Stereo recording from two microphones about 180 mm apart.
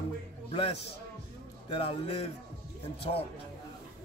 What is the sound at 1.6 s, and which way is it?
Speech, 30° left (ahead or behind).